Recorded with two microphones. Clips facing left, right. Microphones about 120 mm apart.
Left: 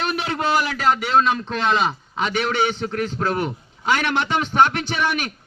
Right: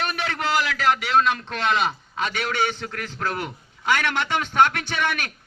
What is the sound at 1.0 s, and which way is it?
A man's voice, 20° left (ahead or behind).